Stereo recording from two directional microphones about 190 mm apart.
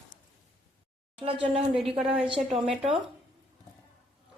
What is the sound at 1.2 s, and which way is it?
Speech, 30° right (ahead or behind).